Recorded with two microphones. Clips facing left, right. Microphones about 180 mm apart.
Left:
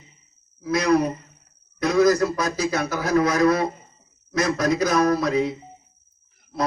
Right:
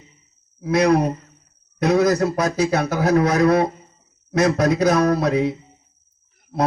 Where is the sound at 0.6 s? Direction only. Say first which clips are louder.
Right 3 dB; 60° right (ahead or behind).